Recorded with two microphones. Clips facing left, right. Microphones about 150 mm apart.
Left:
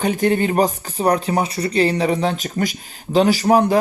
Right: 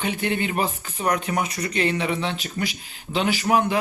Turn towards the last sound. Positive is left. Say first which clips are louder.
# left 6 dB
turn(degrees=35)  # may be behind; listen again after turning